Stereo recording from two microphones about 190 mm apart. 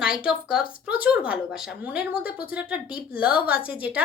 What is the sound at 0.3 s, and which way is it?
Speech, 5° right (ahead or behind).